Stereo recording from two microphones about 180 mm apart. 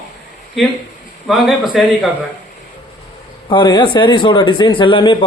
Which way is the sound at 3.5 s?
25° left (ahead or behind).